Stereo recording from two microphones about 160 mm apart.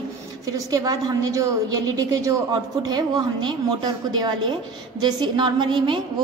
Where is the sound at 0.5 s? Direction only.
25° right (ahead or behind).